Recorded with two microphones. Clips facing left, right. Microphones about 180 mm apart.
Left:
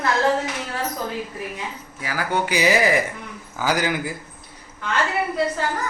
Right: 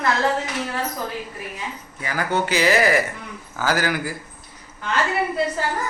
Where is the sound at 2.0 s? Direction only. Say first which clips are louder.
Right 1 dB; 5° left (ahead or behind).